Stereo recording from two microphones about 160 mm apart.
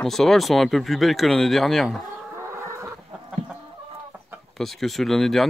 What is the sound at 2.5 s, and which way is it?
Chicken, 15° right (ahead or behind).